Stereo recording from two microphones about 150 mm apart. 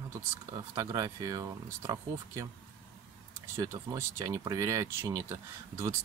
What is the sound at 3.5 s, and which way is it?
Speech, 20° right (ahead or behind).